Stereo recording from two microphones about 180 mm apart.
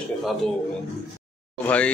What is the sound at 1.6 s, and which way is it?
Speech, 10° left (ahead or behind).